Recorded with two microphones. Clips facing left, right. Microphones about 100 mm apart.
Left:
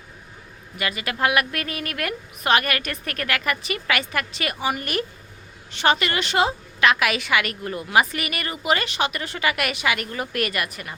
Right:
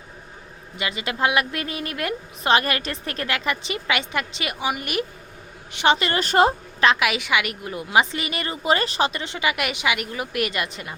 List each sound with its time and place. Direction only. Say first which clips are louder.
0.8 s a woman's voice: even; 20° right (ahead or behind)
6.0 s a woman's voice: right 3 dB; 35° right (ahead or behind)
7.0 s a woman's voice: even; 15° right (ahead or behind)